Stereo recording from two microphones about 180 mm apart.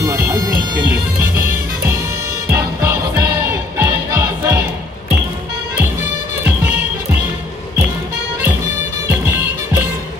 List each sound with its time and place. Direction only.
0.0 s car alarm: 15° right (ahead or behind)
2.5 s music: 15° right (ahead or behind)